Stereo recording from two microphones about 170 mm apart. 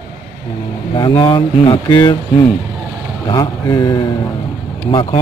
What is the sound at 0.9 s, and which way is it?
Speech, 30° left (ahead or behind).